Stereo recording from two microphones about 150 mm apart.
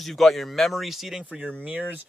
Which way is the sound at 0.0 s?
Centre (ahead or behind).